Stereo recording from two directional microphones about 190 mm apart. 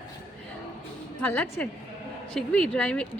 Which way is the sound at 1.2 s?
10° left (ahead or behind).